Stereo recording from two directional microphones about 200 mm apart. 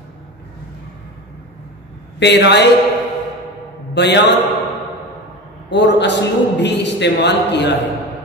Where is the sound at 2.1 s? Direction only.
60° left (ahead or behind).